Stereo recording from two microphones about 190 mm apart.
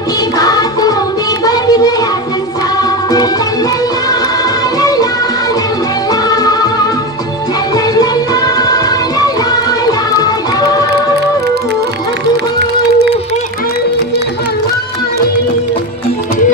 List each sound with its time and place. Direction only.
0.4 s music: 20° left (ahead or behind)
1.4 s child singing: 20° left (ahead or behind)
2.8 s music: 20° left (ahead or behind)
6.2 s music: 20° left (ahead or behind)
7.7 s music: 20° left (ahead or behind)